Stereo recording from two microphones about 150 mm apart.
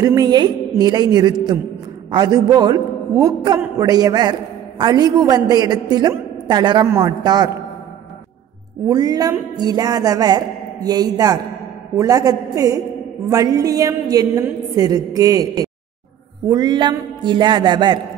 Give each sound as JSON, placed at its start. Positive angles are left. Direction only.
{"t": 0.0, "sound": "a man's voice", "side_deg": -25}
{"t": 8.8, "sound": "a man's voice", "side_deg": -25}